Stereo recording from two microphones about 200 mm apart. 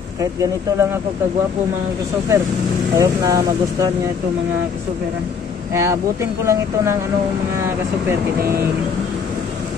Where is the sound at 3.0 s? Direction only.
20° right (ahead or behind).